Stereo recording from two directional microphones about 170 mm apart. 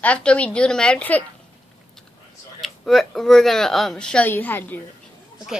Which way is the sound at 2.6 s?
Centre (ahead or behind).